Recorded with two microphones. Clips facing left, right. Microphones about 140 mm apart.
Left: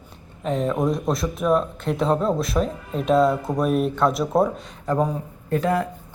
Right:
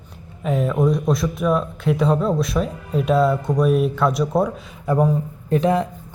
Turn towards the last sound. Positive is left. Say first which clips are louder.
# right 3 dB
turn(degrees=-20)  # may be behind; listen again after turning